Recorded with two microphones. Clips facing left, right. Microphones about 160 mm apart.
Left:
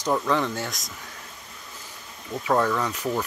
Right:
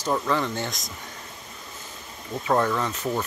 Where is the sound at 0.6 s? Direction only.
Centre (ahead or behind).